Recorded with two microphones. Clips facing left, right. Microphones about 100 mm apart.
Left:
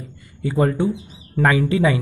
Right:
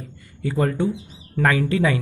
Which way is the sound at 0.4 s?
15° left (ahead or behind).